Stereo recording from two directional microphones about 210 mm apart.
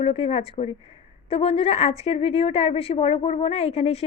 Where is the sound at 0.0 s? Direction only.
25° left (ahead or behind).